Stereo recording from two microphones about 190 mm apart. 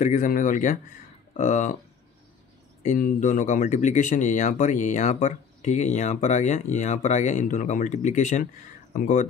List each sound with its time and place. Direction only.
0.0 s speech: 40° left (ahead or behind)
2.8 s speech: 40° left (ahead or behind)